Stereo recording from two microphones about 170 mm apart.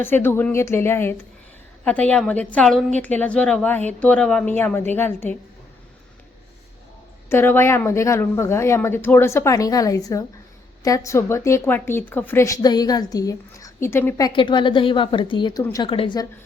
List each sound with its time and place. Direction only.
0.0 s a woman's voice: 10° left (ahead or behind)
7.3 s a woman's voice: 15° left (ahead or behind)
14.3 s a woman's voice: 30° left (ahead or behind)